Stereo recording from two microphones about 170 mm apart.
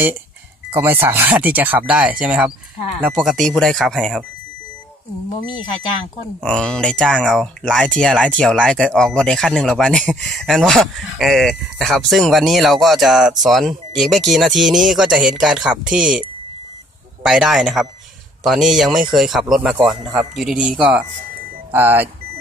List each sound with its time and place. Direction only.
0.7 s speech: 10° right (ahead or behind)
5.4 s speech: 25° left (ahead or behind)
6.4 s speech: 5° left (ahead or behind)
17.2 s speech: 5° right (ahead or behind)